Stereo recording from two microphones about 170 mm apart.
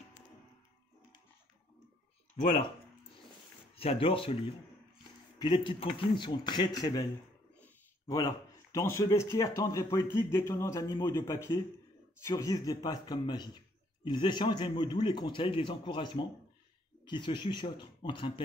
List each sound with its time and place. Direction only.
3.7 s speech: 35° left (ahead or behind)
5.4 s speech: 30° left (ahead or behind)
8.1 s speech: 20° left (ahead or behind)